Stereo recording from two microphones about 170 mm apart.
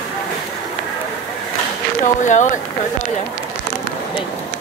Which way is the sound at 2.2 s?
45° left (ahead or behind).